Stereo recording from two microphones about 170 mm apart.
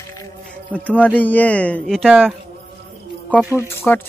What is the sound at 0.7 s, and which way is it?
Speech, 10° left (ahead or behind).